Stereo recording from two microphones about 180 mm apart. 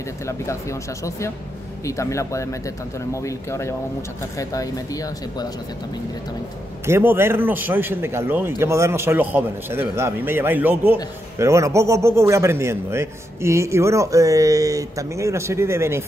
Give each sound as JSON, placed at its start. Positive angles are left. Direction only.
{"t": 0.3, "sound": "speech", "side_deg": 15}
{"t": 6.9, "sound": "a man's voice", "side_deg": -10}